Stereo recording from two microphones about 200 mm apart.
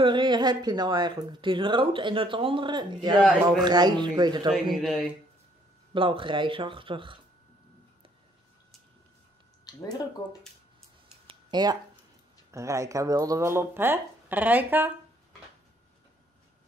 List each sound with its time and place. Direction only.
0.0 s speech: 25° right (ahead or behind)
4.7 s speech: centre (ahead or behind)
5.9 s speech: 25° right (ahead or behind)
9.8 s speech: 20° left (ahead or behind)
11.2 s a sound: 20° right (ahead or behind)
12.4 s speech: 15° right (ahead or behind)